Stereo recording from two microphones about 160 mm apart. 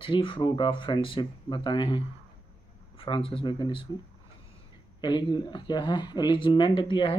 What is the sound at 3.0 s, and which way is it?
Speech, 35° left (ahead or behind).